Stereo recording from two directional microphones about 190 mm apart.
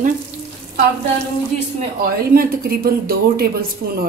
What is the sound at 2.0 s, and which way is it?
Speech, 50° right (ahead or behind).